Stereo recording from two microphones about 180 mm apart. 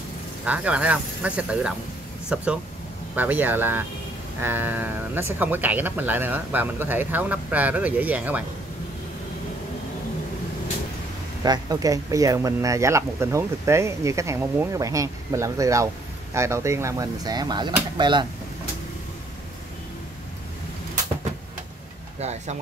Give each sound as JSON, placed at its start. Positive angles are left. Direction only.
{"t": 0.5, "sound": "speech", "side_deg": -5}
{"t": 11.4, "sound": "speech", "side_deg": -20}
{"t": 22.2, "sound": "speech", "side_deg": -40}